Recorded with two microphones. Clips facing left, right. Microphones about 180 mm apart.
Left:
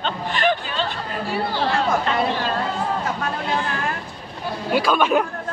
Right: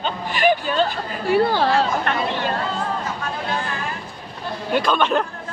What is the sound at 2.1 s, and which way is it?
Speech, 60° right (ahead or behind).